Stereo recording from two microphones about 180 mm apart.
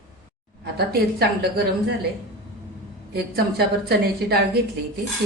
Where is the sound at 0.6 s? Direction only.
60° right (ahead or behind).